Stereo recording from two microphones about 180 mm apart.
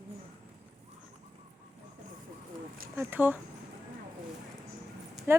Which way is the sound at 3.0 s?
10° right (ahead or behind).